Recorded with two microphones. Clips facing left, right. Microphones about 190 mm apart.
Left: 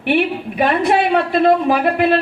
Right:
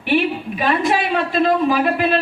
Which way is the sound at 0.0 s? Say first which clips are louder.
Left 1 dB; 55° left (ahead or behind).